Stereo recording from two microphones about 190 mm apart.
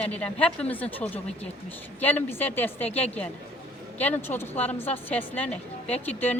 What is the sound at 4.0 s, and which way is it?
A woman's voice, 10° left (ahead or behind).